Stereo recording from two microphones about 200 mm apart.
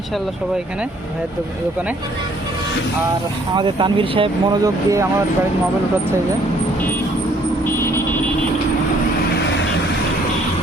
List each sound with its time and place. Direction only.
3.5 s speech: 20° right (ahead or behind)
7.8 s vehicle: 15° left (ahead or behind)